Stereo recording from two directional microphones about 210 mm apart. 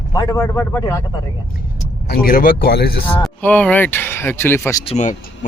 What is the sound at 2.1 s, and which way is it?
Speech, 45° left (ahead or behind).